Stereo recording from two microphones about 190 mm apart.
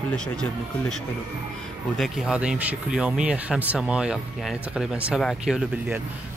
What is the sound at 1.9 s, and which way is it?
Speech, centre (ahead or behind).